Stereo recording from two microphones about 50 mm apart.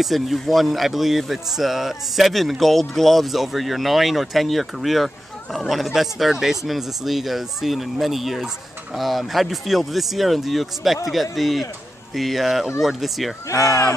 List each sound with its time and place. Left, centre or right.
0.0 s speech: centre
13.5 s speech: left